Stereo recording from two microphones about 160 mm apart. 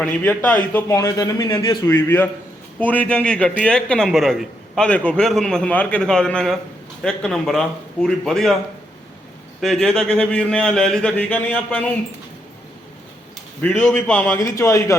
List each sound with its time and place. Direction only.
0.0 s a man's voice: 10° left (ahead or behind)
9.6 s a man's voice: centre (ahead or behind)
13.6 s speech: 10° left (ahead or behind)